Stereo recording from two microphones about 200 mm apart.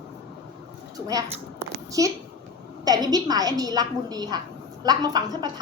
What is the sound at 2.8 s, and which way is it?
A woman's voice, 20° right (ahead or behind).